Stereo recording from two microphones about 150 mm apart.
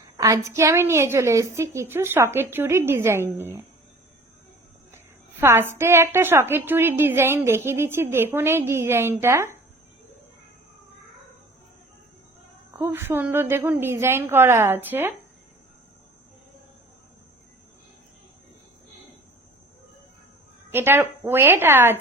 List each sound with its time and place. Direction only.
0.2 s a woman's voice: 20° right (ahead or behind)
5.4 s a woman's voice: 15° right (ahead or behind)
12.8 s a woman's voice: 15° right (ahead or behind)
20.7 s a woman's voice: 15° right (ahead or behind)